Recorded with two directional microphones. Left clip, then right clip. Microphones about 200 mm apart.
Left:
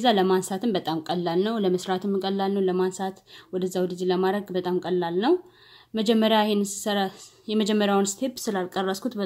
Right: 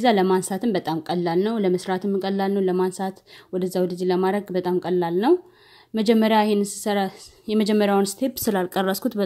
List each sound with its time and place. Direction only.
0.0 s a woman's voice: 30° right (ahead or behind)